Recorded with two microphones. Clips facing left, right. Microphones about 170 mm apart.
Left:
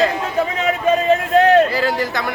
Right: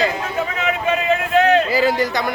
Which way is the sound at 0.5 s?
40° left (ahead or behind).